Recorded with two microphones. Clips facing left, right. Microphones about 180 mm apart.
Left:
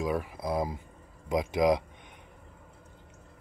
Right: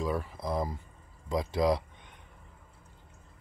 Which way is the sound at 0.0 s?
10° left (ahead or behind).